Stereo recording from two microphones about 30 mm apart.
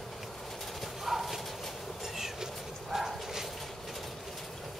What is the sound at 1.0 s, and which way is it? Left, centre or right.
Clip-clop, centre.